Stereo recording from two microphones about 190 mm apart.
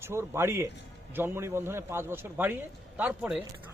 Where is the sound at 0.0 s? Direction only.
15° right (ahead or behind).